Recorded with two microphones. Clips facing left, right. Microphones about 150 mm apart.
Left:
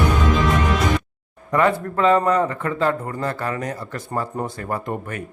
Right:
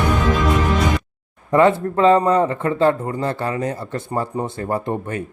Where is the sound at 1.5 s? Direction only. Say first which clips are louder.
Right 4 dB; 25° right (ahead or behind).